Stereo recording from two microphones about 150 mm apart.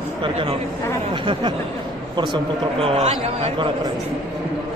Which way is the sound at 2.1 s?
35° right (ahead or behind).